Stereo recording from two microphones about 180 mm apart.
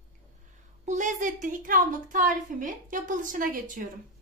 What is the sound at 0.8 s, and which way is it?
A woman's voice, 45° right (ahead or behind).